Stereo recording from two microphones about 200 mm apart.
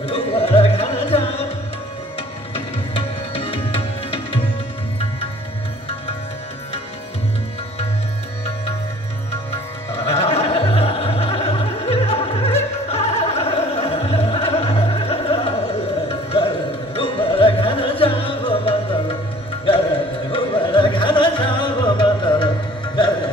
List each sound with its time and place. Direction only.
0.0 s music: 30° left (ahead or behind)
10.1 s music: 30° left (ahead or behind)
20.2 s music: 25° left (ahead or behind)